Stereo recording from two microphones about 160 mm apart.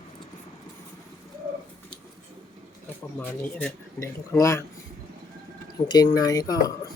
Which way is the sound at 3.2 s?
10° left (ahead or behind).